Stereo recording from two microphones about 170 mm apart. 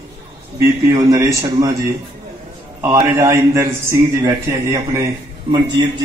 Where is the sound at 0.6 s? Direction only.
20° right (ahead or behind).